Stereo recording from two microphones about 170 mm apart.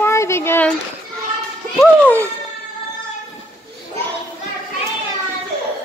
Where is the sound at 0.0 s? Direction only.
15° left (ahead or behind).